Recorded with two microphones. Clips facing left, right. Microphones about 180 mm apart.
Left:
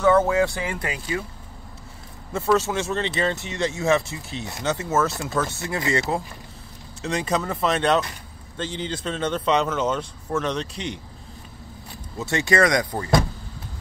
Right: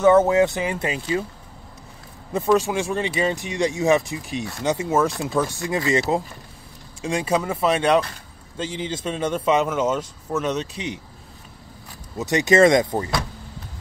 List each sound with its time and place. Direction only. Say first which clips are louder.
0.0 s speech: right 3 dB; 20° right (ahead or behind)
2.3 s speech: right 2 dB; 15° right (ahead or behind)
12.2 s speech: right 5 dB; 20° right (ahead or behind)